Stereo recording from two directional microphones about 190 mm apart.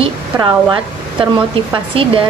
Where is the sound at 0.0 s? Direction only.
20° right (ahead or behind).